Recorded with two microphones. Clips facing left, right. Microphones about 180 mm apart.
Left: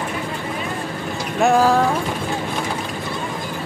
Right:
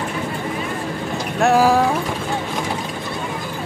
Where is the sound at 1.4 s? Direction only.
5° right (ahead or behind).